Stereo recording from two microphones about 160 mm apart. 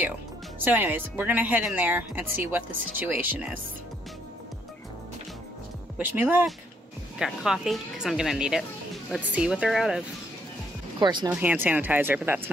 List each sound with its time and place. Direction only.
0.6 s speech: 10° right (ahead or behind)
5.9 s a woman's voice: 10° right (ahead or behind)
11.0 s speech: 30° right (ahead or behind)
11.2 s speech: 10° right (ahead or behind)